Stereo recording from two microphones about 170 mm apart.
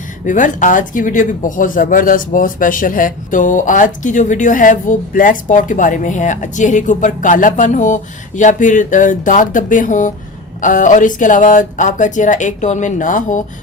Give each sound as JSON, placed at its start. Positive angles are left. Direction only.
{"t": 0.3, "sound": "speech", "side_deg": 50}